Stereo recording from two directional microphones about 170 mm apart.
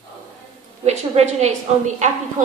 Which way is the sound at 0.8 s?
40° right (ahead or behind).